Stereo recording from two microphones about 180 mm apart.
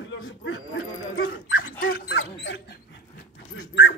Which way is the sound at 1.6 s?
50° left (ahead or behind).